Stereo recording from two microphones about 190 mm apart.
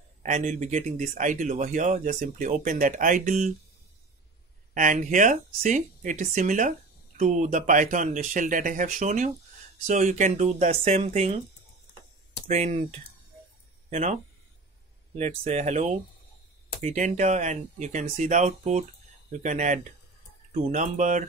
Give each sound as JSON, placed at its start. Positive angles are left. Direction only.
{"t": 0.2, "sound": "speech", "side_deg": -40}
{"t": 4.7, "sound": "speech", "side_deg": -45}
{"t": 12.4, "sound": "speech", "side_deg": -35}
{"t": 13.8, "sound": "speech", "side_deg": -40}